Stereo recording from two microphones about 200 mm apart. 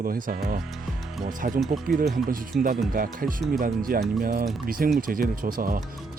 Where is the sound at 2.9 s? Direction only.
45° right (ahead or behind).